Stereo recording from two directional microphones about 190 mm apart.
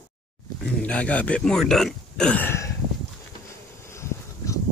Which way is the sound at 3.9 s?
15° left (ahead or behind).